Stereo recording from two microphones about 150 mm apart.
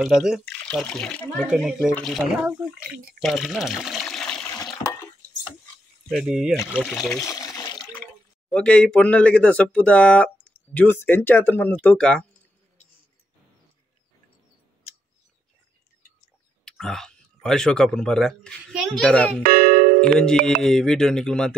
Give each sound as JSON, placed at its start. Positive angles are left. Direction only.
{"t": 0.5, "sound": "speech", "side_deg": 5}
{"t": 1.4, "sound": "speech", "side_deg": -5}
{"t": 3.2, "sound": "water", "side_deg": 0}
{"t": 6.0, "sound": "speech", "side_deg": 0}
{"t": 7.2, "sound": "water", "side_deg": 20}
{"t": 8.5, "sound": "speech", "side_deg": 5}
{"t": 16.6, "sound": "speech", "side_deg": 0}
{"t": 19.4, "sound": "speech", "side_deg": -75}
{"t": 20.0, "sound": "speech", "side_deg": 5}